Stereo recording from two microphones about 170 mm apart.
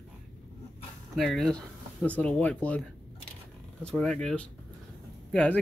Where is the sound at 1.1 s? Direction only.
Centre (ahead or behind).